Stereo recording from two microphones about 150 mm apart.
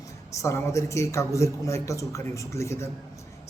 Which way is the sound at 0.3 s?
20° left (ahead or behind).